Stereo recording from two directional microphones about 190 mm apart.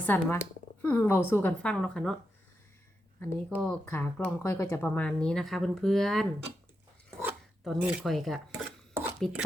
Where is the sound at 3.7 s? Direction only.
10° left (ahead or behind).